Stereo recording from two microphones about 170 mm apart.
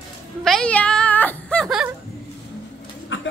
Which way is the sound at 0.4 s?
5° left (ahead or behind).